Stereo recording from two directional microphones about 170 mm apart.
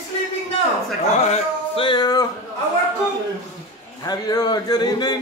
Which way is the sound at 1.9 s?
25° left (ahead or behind).